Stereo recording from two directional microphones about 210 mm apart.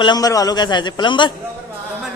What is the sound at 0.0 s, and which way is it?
Speech, 20° left (ahead or behind).